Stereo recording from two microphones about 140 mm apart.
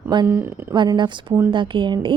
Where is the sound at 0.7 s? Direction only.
30° right (ahead or behind).